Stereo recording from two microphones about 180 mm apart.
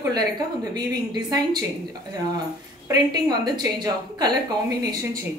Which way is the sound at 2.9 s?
25° right (ahead or behind).